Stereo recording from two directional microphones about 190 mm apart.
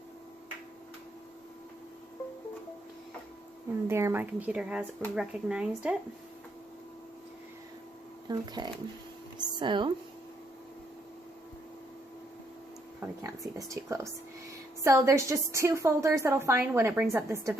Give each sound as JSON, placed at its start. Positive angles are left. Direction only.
{"t": 3.8, "sound": "a woman's voice", "side_deg": -15}
{"t": 8.3, "sound": "speech", "side_deg": -20}
{"t": 13.2, "sound": "a woman's voice", "side_deg": -15}